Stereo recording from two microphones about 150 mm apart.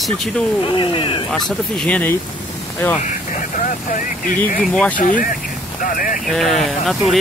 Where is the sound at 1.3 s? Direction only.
5° left (ahead or behind).